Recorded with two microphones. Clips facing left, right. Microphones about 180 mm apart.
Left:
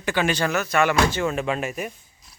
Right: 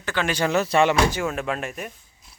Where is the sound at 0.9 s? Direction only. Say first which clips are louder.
Left 1 dB; 15° right (ahead or behind); by 1.9 s 5° left (ahead or behind).